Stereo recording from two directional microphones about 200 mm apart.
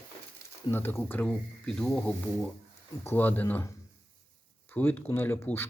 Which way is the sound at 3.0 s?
10° left (ahead or behind).